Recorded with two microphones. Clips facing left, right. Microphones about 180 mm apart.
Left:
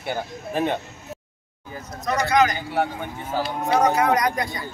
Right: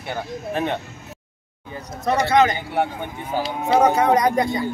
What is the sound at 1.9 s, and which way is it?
Speech, 30° right (ahead or behind).